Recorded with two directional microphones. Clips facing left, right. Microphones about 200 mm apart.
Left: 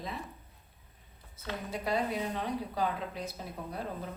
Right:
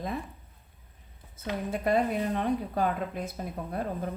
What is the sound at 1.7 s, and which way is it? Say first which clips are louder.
Speech: right 6 dB; 50° right (ahead or behind).